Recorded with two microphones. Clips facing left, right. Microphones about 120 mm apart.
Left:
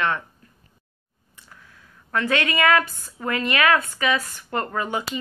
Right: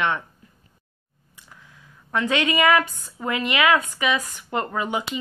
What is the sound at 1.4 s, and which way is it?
A woman's voice, 15° right (ahead or behind).